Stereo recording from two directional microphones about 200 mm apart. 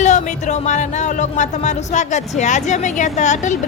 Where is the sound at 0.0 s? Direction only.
35° left (ahead or behind).